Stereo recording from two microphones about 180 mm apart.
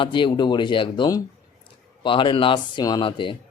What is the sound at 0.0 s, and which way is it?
A man's voice, 25° left (ahead or behind).